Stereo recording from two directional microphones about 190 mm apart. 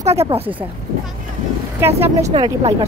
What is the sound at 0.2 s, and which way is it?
Speech, 30° right (ahead or behind).